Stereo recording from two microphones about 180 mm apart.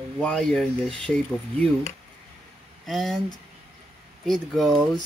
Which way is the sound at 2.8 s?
Centre (ahead or behind).